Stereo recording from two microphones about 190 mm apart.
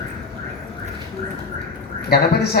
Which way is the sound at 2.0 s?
55° left (ahead or behind).